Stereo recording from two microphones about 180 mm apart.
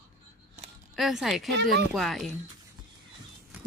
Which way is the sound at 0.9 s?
Centre (ahead or behind).